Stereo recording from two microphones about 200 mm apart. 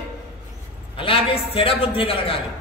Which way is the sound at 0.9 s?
25° left (ahead or behind).